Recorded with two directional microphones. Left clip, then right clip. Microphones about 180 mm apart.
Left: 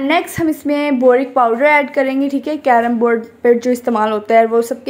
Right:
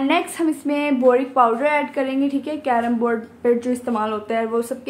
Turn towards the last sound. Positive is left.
turn(degrees=30)  # may be behind; listen again after turning